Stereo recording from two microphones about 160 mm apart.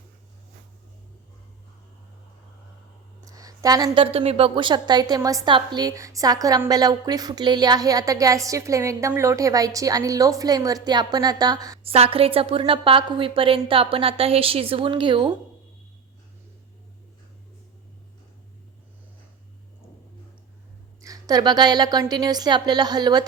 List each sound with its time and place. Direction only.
3.2 s a sound: 20° right (ahead or behind)
4.0 s a woman's voice: 35° right (ahead or behind)
11.8 s a woman's voice: 35° right (ahead or behind)
21.0 s a woman's voice: 25° right (ahead or behind)